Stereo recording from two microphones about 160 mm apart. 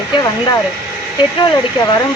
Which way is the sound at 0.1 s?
25° left (ahead or behind).